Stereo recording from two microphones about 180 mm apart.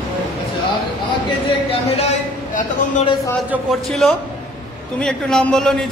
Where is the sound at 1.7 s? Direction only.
35° left (ahead or behind).